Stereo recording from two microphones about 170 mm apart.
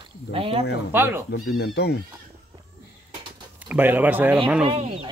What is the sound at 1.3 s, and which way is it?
Speech, 70° left (ahead or behind).